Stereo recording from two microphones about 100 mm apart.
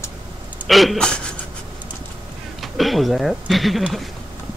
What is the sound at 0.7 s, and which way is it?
Speech, centre (ahead or behind).